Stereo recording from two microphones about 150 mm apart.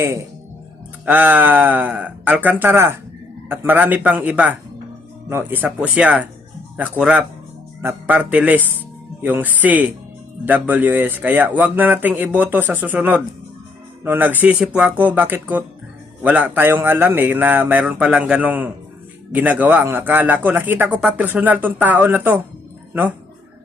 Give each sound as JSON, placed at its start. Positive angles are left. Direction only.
{"t": 1.0, "sound": "speech", "side_deg": -10}